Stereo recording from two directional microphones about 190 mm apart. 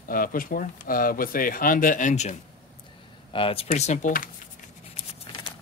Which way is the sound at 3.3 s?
30° left (ahead or behind).